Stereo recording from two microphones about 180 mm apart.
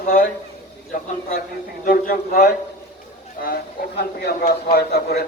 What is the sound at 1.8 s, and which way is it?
Speech, 50° left (ahead or behind).